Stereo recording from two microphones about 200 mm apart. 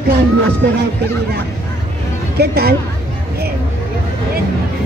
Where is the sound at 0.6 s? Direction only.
55° right (ahead or behind).